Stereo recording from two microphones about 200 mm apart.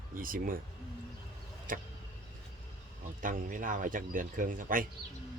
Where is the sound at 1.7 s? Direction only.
45° right (ahead or behind).